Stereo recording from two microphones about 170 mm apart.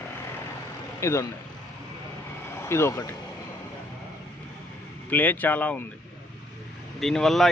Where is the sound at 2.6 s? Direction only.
15° left (ahead or behind).